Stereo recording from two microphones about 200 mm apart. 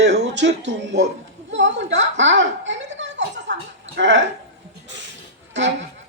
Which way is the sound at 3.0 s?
60° right (ahead or behind).